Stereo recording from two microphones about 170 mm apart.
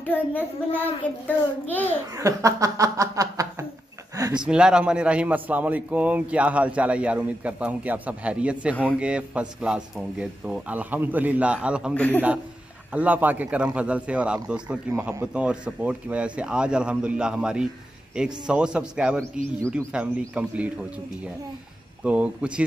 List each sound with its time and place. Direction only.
0.0 s a child's voice: 10° left (ahead or behind)
2.1 s speech: 20° right (ahead or behind)
4.5 s a man's voice: 5° right (ahead or behind)
11.9 s a child's voice: 10° left (ahead or behind)
12.9 s a man's voice: 10° right (ahead or behind)
22.0 s a man's voice: 5° right (ahead or behind)